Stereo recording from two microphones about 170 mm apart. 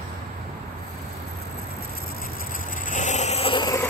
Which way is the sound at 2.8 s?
45° left (ahead or behind).